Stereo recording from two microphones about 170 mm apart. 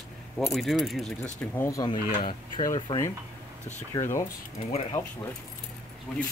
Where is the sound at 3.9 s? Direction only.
15° left (ahead or behind).